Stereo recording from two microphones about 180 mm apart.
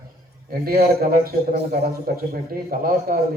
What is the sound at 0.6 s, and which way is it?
A man's voice, 55° right (ahead or behind).